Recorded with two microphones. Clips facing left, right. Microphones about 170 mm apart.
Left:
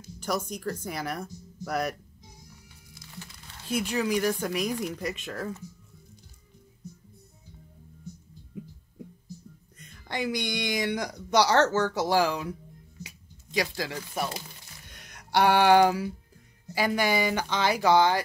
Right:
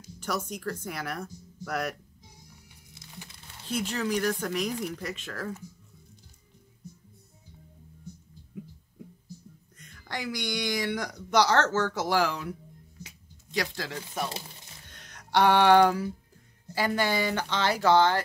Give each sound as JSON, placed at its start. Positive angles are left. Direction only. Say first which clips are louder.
{"t": 0.7, "sound": "speech", "louder": "left 2 dB", "side_deg": 15}
{"t": 2.9, "sound": "music", "louder": "left 2 dB", "side_deg": -25}
{"t": 3.6, "sound": "speech", "louder": "left 2 dB", "side_deg": 10}
{"t": 10.0, "sound": "speech", "louder": "left 3 dB", "side_deg": 20}
{"t": 13.0, "sound": "squish", "louder": "left 3 dB", "side_deg": 10}
{"t": 14.9, "sound": "a sound", "louder": "even", "side_deg": 10}
{"t": 16.7, "sound": "speech", "louder": "left 1 dB", "side_deg": 10}